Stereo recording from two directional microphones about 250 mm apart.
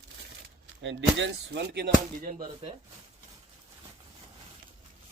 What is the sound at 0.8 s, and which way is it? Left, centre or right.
Speech, right.